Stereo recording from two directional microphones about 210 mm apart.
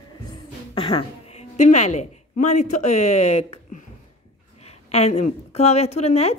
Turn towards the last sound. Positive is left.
turn(degrees=30)  # may be behind; listen again after turning